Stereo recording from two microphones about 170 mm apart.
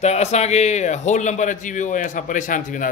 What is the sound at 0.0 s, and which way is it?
A man's voice, 40° left (ahead or behind).